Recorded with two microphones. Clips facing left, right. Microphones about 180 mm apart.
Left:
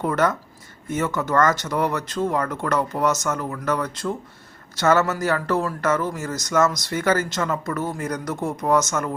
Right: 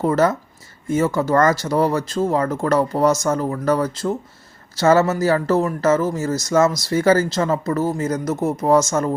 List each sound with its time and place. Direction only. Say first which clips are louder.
0.0 s speech: right 4 dB; 30° right (ahead or behind)